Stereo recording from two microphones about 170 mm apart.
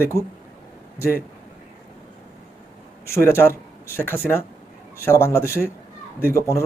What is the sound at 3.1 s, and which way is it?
Speech, 15° left (ahead or behind).